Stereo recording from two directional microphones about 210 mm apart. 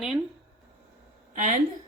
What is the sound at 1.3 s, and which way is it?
Speech, 40° right (ahead or behind).